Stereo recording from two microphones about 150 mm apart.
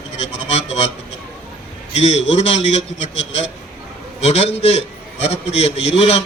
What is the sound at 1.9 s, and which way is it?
A man's voice, 45° left (ahead or behind).